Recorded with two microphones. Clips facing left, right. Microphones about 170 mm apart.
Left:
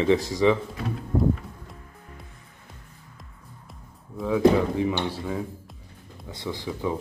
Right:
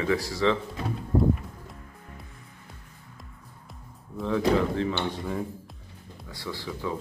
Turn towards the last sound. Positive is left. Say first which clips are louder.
# left 4 dB
turn(degrees=20)  # may be behind; listen again after turning